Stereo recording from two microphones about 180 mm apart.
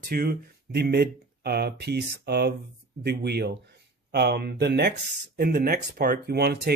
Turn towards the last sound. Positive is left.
turn(degrees=-60)  # may be behind; listen again after turning